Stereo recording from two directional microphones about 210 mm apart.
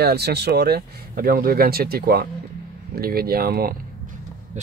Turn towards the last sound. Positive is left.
turn(degrees=-40)  # may be behind; listen again after turning